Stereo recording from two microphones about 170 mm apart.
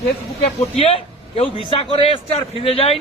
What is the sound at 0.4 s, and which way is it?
Speech, 35° left (ahead or behind).